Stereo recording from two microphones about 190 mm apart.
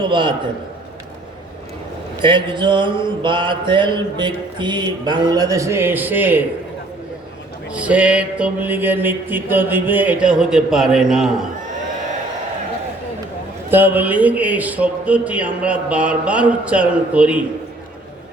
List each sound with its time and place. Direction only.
0.0 s mantra: 25° right (ahead or behind)
2.2 s mantra: 25° right (ahead or behind); by 6.4 s 10° right (ahead or behind)
7.7 s a man's voice: 5° right (ahead or behind)
13.7 s a man's voice: 10° right (ahead or behind)